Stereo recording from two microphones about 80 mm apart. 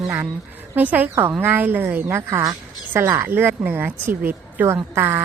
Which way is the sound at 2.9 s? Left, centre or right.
Right.